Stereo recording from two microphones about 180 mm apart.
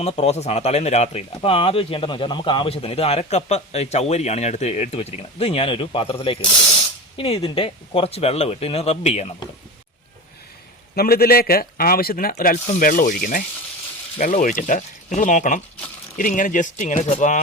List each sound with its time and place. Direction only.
0.0 s speech: 35° left (ahead or behind)
10.9 s a man's voice: 55° left (ahead or behind)